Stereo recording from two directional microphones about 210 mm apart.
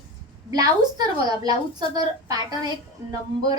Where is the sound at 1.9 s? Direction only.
20° right (ahead or behind).